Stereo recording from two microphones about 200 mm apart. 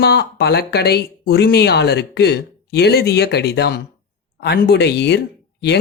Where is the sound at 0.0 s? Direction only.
55° left (ahead or behind).